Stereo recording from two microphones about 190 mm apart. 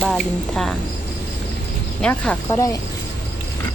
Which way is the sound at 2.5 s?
15° left (ahead or behind).